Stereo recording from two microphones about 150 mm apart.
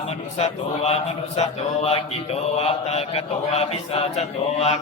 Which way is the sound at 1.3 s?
45° left (ahead or behind).